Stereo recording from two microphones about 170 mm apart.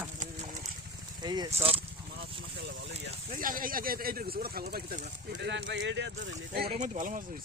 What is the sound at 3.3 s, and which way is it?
Speech, 55° right (ahead or behind).